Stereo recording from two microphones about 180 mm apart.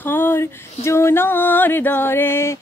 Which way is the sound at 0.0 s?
10° left (ahead or behind).